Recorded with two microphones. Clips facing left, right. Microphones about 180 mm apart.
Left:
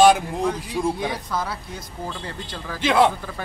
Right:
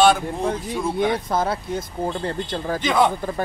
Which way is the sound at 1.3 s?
50° right (ahead or behind).